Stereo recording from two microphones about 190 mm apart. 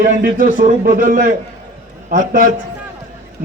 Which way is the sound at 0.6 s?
45° right (ahead or behind).